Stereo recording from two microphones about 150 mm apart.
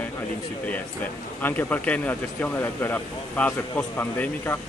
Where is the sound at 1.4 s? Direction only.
10° left (ahead or behind).